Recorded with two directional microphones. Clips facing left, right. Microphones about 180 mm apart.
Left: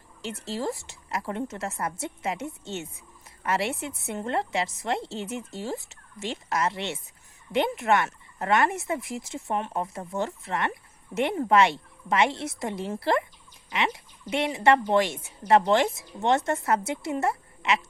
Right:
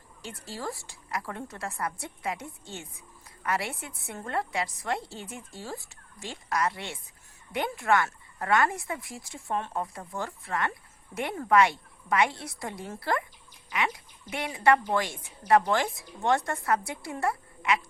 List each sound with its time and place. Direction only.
0.2 s speech: 25° left (ahead or behind)